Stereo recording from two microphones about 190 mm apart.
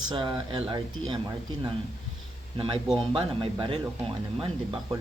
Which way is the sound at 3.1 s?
25° right (ahead or behind).